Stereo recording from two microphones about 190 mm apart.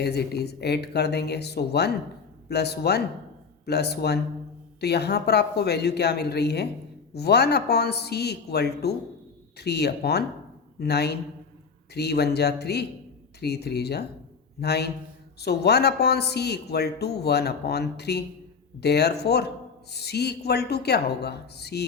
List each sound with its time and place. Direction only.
0.0 s speech: 60° left (ahead or behind)